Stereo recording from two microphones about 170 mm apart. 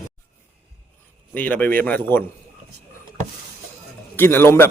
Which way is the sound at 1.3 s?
10° left (ahead or behind).